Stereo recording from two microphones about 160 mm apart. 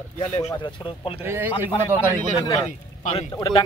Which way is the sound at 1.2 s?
15° right (ahead or behind).